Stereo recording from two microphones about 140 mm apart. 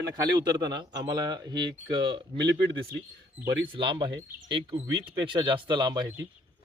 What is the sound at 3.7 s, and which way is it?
Speech, 35° right (ahead or behind).